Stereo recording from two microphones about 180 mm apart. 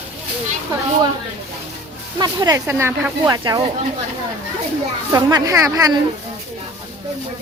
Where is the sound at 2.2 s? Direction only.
20° right (ahead or behind).